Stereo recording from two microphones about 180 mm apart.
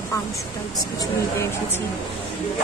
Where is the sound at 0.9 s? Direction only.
15° left (ahead or behind).